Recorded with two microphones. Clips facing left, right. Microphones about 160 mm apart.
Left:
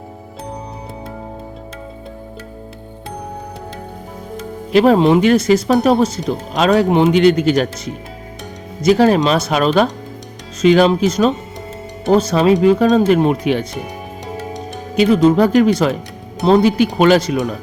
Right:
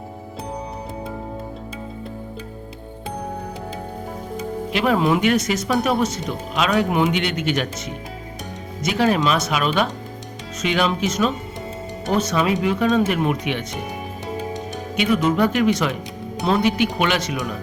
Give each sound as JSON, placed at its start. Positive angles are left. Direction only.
{"t": 4.7, "sound": "speech", "side_deg": 35}
{"t": 8.8, "sound": "speech", "side_deg": 35}
{"t": 14.9, "sound": "speech", "side_deg": 35}